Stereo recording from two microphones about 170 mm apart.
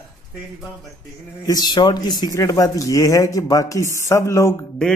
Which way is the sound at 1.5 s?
25° left (ahead or behind).